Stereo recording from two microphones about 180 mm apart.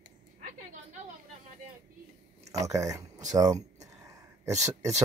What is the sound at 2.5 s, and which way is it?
Speech, 20° right (ahead or behind).